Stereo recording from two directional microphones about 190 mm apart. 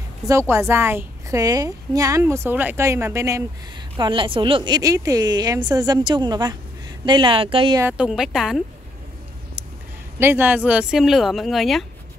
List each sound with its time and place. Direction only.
0.3 s a woman's voice: 15° right (ahead or behind)
3.9 s a woman's voice: 25° right (ahead or behind)
7.8 s speech: 5° right (ahead or behind)
10.1 s speech: 10° right (ahead or behind)